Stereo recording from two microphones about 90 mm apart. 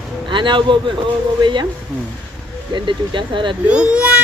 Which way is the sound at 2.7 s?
65° right (ahead or behind).